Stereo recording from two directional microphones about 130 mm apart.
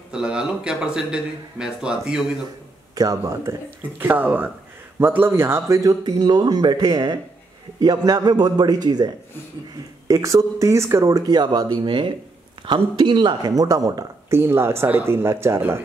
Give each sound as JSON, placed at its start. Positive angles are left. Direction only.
{"t": 0.1, "sound": "speech", "side_deg": -5}
{"t": 2.9, "sound": "speech", "side_deg": -25}
{"t": 4.0, "sound": "a man's voice", "side_deg": -15}